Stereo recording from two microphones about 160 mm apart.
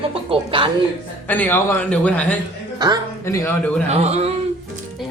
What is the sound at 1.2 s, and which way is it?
A man's voice, 10° left (ahead or behind).